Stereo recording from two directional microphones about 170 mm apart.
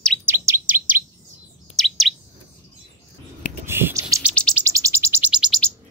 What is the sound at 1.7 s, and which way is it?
Chirp, centre (ahead or behind).